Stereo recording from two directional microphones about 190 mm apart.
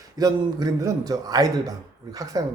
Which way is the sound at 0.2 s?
20° right (ahead or behind).